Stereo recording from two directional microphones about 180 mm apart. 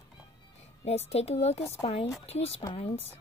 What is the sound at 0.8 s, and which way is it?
Speech, 35° left (ahead or behind).